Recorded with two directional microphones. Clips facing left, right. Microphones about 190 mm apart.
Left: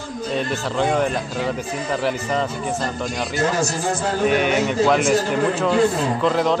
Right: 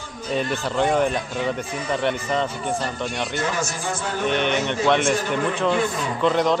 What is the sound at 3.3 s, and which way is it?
Speech, 40° left (ahead or behind).